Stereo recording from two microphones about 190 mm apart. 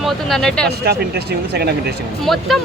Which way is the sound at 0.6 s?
55° right (ahead or behind).